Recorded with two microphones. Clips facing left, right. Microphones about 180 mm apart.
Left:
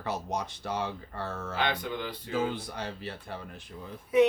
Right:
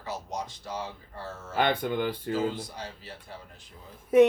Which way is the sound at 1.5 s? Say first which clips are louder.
Right 6 dB; 50° right (ahead or behind).